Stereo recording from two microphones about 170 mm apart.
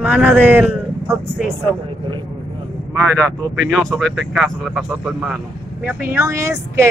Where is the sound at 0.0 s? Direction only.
10° right (ahead or behind).